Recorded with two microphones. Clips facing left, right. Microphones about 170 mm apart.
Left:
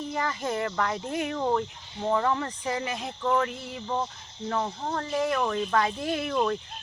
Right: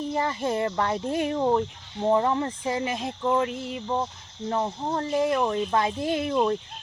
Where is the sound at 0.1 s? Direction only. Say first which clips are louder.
Right 3 dB; 30° right (ahead or behind).